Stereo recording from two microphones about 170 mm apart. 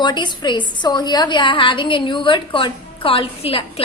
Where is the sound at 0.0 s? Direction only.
25° left (ahead or behind).